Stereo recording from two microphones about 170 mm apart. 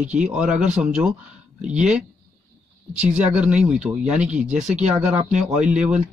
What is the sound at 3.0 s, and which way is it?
Speech, 10° right (ahead or behind).